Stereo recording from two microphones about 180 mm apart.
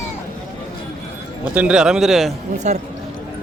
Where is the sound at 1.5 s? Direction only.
5° right (ahead or behind).